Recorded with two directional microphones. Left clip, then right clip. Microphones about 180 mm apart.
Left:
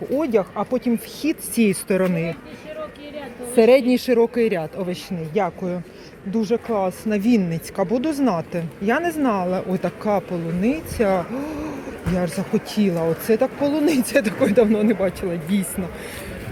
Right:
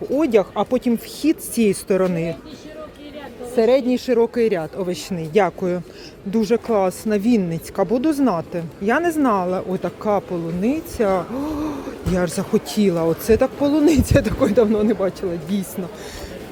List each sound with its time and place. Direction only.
0.2 s speech: 25° right (ahead or behind)
1.2 s speech: 10° right (ahead or behind)
3.5 s a woman's voice: 10° left (ahead or behind); by 4.9 s 10° right (ahead or behind)
5.0 s speech: 35° right (ahead or behind); by 15.6 s 10° right (ahead or behind)